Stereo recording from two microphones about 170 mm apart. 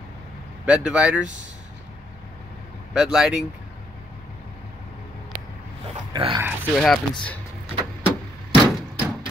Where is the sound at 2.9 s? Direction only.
Centre (ahead or behind).